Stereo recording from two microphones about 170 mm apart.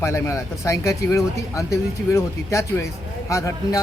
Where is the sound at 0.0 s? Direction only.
15° left (ahead or behind).